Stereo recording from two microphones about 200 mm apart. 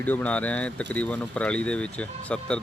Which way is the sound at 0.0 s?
10° left (ahead or behind).